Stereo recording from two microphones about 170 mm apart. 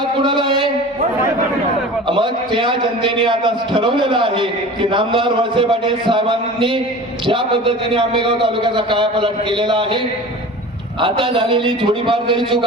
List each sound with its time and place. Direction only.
0.2 s a man's voice: 30° right (ahead or behind)
2.0 s a man's voice: 30° right (ahead or behind)
11.0 s a man's voice: 30° right (ahead or behind)